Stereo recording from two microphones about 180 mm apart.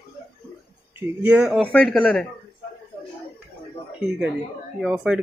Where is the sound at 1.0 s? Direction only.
5° right (ahead or behind).